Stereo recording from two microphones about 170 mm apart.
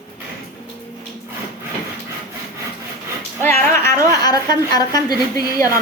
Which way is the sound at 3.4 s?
15° left (ahead or behind).